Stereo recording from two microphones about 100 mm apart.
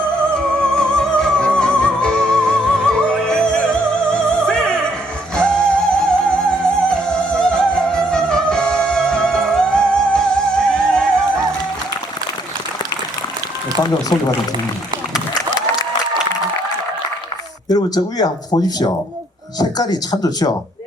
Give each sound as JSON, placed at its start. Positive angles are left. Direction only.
{"t": 0.6, "sound": "music", "side_deg": 10}
{"t": 13.7, "sound": "a man's voice", "side_deg": 45}
{"t": 17.7, "sound": "speech", "side_deg": 40}